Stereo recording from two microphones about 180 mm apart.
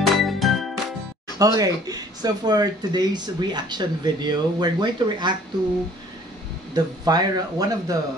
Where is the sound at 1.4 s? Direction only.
20° right (ahead or behind).